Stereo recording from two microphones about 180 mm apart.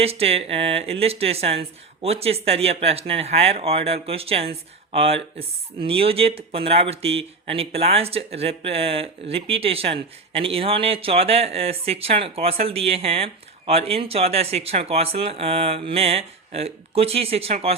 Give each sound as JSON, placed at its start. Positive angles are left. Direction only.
{"t": 0.0, "sound": "speech", "side_deg": -35}